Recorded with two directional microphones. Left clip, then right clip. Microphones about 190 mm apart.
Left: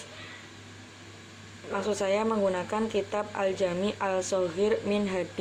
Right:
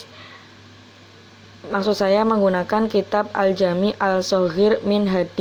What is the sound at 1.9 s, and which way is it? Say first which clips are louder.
A woman's voice: right 10 dB; 30° right (ahead or behind).